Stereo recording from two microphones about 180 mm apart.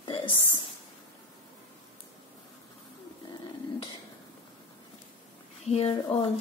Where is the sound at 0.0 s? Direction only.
30° left (ahead or behind).